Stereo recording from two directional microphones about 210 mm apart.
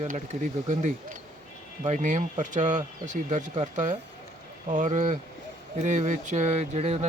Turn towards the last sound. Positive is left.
turn(degrees=-30)  # may be behind; listen again after turning